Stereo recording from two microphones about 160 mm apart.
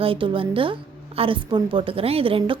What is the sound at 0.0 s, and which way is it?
A woman's voice, 35° right (ahead or behind).